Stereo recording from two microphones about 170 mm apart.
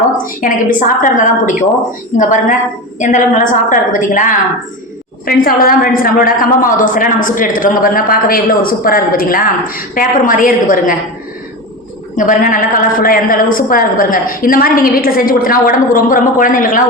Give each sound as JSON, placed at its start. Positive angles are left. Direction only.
{"t": 0.4, "sound": "a woman's voice", "side_deg": 50}
{"t": 12.1, "sound": "a woman's voice", "side_deg": 50}